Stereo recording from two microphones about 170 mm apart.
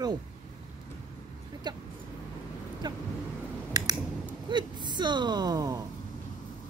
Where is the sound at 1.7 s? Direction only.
25° right (ahead or behind).